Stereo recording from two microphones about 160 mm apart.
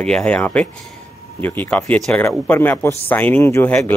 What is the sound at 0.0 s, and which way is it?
Speech, 5° left (ahead or behind).